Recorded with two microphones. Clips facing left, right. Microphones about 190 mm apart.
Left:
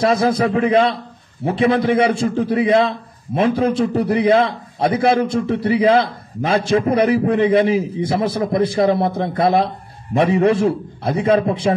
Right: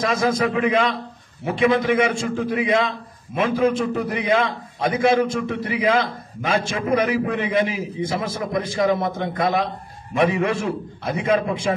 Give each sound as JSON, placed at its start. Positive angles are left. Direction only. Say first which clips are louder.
{"t": 0.0, "sound": "a man's voice", "louder": "left 4 dB", "side_deg": 35}